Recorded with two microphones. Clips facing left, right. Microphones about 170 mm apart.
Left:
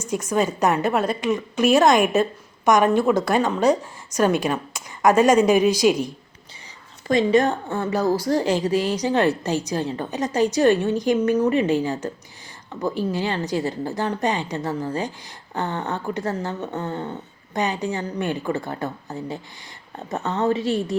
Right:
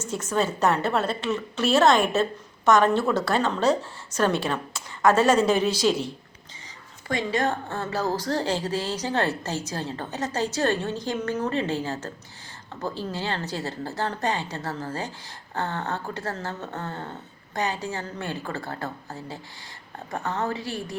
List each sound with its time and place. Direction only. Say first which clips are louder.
0.0 s a woman's voice: left 4 dB; 15° left (ahead or behind)
7.1 s a woman's voice: left 8 dB; 20° left (ahead or behind)